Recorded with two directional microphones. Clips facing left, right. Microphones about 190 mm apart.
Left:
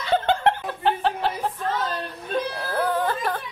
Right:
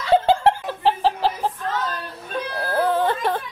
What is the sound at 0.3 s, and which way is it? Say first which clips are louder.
Chuckle: right 3 dB; 30° right (ahead or behind).